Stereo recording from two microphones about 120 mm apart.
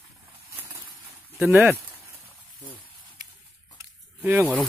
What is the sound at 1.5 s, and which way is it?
Speech, 15° right (ahead or behind).